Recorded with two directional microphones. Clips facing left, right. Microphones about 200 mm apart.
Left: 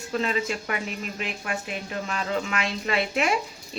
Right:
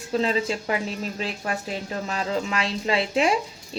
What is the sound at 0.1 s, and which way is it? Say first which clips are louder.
Speech: right 3 dB; 30° right (ahead or behind).